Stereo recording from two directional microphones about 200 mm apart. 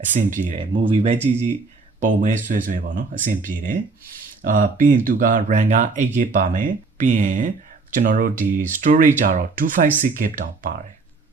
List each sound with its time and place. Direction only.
0.1 s speech: 40° right (ahead or behind)
0.6 s speech: 25° right (ahead or behind)
2.0 s speech: 40° right (ahead or behind)